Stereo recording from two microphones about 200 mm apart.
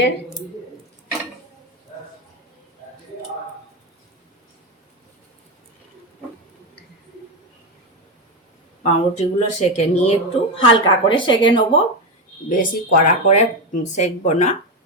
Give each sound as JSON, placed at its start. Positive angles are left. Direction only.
{"t": 8.8, "sound": "speech", "side_deg": 35}
{"t": 12.5, "sound": "speech", "side_deg": 45}